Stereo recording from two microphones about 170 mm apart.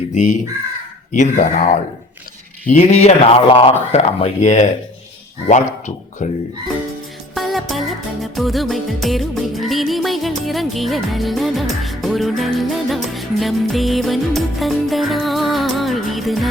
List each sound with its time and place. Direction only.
0.1 s speech: 50° left (ahead or behind)
7.3 s music: centre (ahead or behind)